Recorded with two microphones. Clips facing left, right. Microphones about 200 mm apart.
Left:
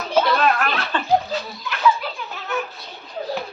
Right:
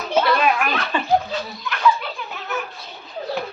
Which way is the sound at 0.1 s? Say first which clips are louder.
Even; 10° right (ahead or behind).